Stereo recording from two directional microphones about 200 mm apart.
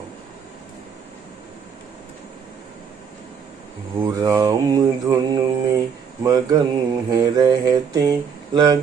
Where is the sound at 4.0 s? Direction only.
20° right (ahead or behind).